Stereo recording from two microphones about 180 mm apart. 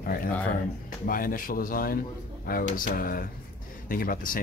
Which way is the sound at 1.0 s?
50° left (ahead or behind).